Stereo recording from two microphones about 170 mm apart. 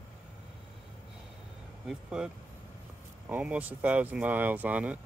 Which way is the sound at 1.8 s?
5° right (ahead or behind).